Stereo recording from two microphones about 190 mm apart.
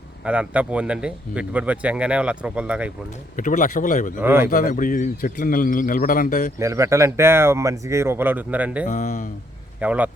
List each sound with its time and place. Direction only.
0.3 s speech: 5° right (ahead or behind)
3.3 s a man's voice: 45° left (ahead or behind)
4.2 s speech: 10° right (ahead or behind)
4.5 s a man's voice: 45° left (ahead or behind)
6.6 s speech: 15° right (ahead or behind)
8.9 s a man's voice: 40° left (ahead or behind)
9.8 s speech: 5° right (ahead or behind)